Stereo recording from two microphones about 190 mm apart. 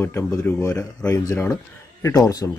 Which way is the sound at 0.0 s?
15° left (ahead or behind).